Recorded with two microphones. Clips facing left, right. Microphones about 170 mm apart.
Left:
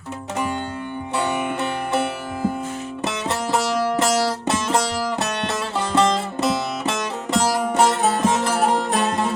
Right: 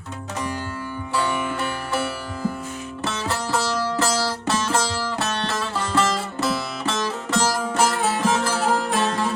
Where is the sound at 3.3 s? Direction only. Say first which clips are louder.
Left 3 dB; 20° left (ahead or behind).